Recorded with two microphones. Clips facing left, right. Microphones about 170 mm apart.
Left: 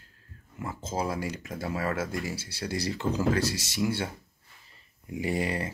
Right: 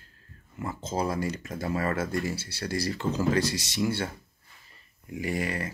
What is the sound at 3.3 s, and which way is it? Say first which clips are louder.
Speech: right 2 dB; 5° left (ahead or behind).